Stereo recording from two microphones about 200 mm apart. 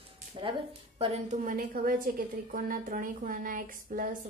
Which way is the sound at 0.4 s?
25° right (ahead or behind).